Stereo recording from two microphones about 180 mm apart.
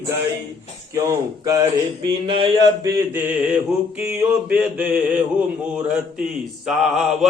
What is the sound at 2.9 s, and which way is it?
Mantra, 10° right (ahead or behind).